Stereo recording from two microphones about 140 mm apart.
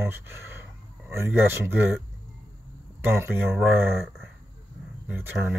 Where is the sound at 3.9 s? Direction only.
Centre (ahead or behind).